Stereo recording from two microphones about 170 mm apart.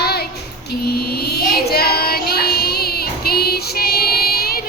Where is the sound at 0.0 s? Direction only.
70° left (ahead or behind).